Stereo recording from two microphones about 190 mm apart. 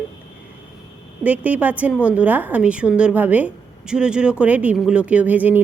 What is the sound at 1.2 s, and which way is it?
A woman's voice, 5° right (ahead or behind).